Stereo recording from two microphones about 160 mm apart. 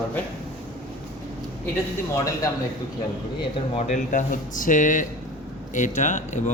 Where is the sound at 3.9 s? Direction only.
55° left (ahead or behind).